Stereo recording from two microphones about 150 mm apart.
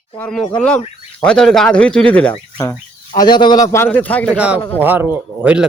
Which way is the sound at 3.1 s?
30° left (ahead or behind).